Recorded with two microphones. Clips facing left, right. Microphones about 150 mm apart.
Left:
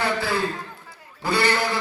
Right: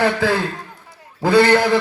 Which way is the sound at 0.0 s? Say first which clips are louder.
Right 7 dB; 90° right.